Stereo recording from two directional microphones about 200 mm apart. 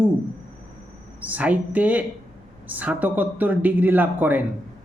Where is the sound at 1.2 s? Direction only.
5° right (ahead or behind).